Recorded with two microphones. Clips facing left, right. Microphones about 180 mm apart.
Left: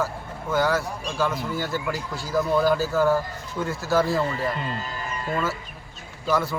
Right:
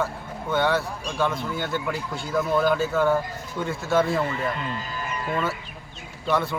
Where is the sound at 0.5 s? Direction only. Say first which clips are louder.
Even; centre (ahead or behind).